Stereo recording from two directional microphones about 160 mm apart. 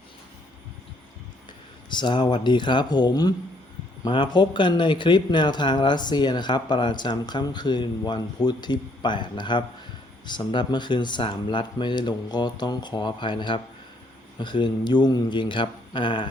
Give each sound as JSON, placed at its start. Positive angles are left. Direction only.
{"t": 1.9, "sound": "speech", "side_deg": 30}